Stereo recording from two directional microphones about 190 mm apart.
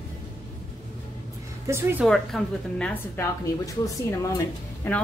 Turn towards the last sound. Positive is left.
turn(degrees=10)  # may be behind; listen again after turning